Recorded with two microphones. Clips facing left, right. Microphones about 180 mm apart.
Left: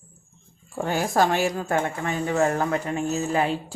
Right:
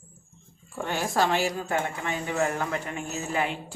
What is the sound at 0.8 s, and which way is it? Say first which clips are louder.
Speech: left 4 dB; 40° left (ahead or behind).